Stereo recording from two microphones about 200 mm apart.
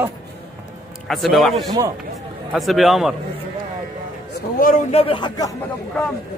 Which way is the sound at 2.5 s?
Centre (ahead or behind).